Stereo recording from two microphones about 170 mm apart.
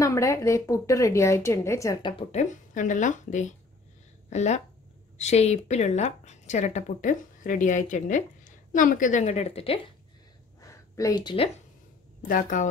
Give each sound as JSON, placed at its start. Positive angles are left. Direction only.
{"t": 0.0, "sound": "speech", "side_deg": 20}
{"t": 2.1, "sound": "a woman's voice", "side_deg": 45}
{"t": 10.6, "sound": "a sound", "side_deg": 20}
{"t": 12.2, "sound": "a woman's voice", "side_deg": 55}